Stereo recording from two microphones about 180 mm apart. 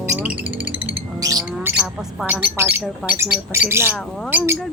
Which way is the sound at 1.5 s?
5° right (ahead or behind).